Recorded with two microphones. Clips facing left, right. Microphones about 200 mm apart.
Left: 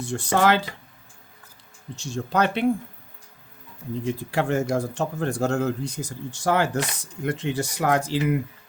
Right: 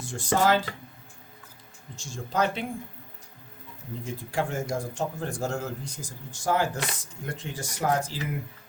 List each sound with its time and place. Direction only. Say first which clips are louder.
0.0 s speech: left 3 dB; 65° left (ahead or behind)
2.0 s speech: left 4 dB; 65° left (ahead or behind)
4.0 s speech: left 5 dB; 70° left (ahead or behind)